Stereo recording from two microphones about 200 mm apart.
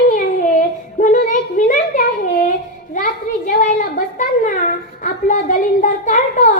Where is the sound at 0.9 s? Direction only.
40° left (ahead or behind).